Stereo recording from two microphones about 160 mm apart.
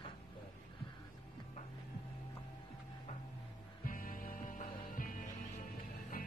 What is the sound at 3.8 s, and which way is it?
Music, 60° left (ahead or behind).